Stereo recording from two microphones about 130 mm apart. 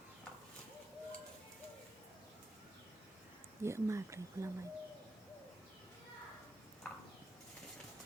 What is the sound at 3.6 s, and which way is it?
Speech, 20° right (ahead or behind).